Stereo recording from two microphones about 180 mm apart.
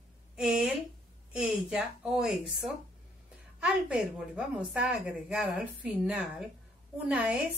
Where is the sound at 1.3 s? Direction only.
5° right (ahead or behind).